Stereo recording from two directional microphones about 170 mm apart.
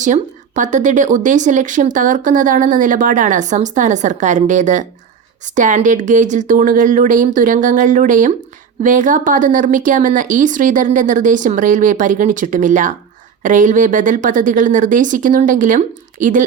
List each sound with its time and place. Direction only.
0.0 s speech: 45° right (ahead or behind)